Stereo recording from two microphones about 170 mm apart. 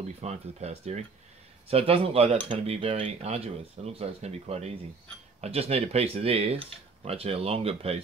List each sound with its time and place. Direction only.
0.2 s speech: 40° right (ahead or behind)